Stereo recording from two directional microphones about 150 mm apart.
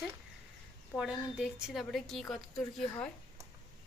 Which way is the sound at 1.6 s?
Centre (ahead or behind).